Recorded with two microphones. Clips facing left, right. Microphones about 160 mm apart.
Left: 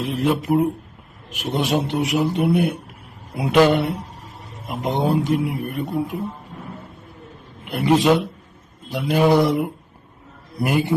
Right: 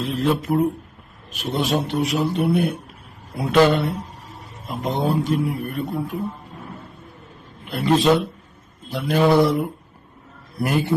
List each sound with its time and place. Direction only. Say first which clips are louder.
0.0 s a man's voice: even; 20° left (ahead or behind)
7.7 s a man's voice: left 1 dB; 15° left (ahead or behind)